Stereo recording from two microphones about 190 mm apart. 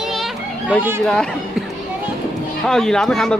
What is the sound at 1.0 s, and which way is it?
Speech, 5° left (ahead or behind).